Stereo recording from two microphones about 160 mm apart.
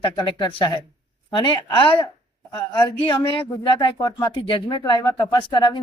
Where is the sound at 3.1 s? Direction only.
25° left (ahead or behind).